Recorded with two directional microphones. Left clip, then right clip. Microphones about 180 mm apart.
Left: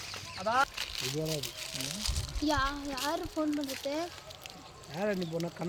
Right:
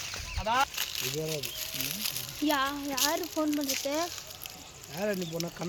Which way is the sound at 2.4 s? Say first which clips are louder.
Right 2 dB; 35° right (ahead or behind).